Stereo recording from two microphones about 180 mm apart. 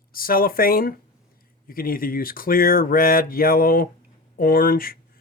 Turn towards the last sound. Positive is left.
turn(degrees=55)  # may be behind; listen again after turning